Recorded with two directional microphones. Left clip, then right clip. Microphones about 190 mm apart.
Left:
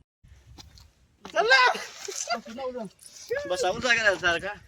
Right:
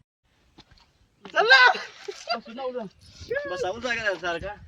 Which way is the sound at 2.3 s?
5° left (ahead or behind).